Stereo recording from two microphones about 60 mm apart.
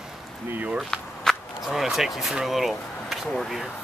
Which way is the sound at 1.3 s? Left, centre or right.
Centre.